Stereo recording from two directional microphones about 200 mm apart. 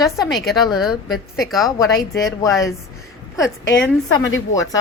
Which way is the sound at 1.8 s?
15° left (ahead or behind).